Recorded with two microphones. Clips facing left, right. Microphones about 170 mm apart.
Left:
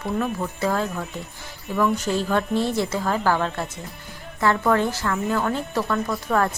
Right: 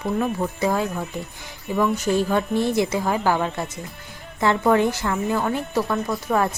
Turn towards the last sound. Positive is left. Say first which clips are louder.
# right 1 dB
turn(degrees=-10)  # may be behind; listen again after turning